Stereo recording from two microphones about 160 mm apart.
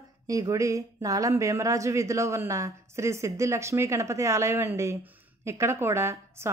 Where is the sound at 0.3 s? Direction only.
20° right (ahead or behind).